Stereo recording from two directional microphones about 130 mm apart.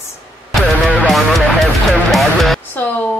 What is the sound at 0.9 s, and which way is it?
Music, 5° left (ahead or behind).